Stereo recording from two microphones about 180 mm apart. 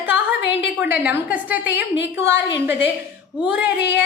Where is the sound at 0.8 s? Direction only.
10° right (ahead or behind).